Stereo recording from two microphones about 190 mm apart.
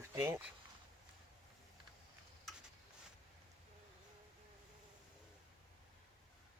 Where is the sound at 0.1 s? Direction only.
15° right (ahead or behind).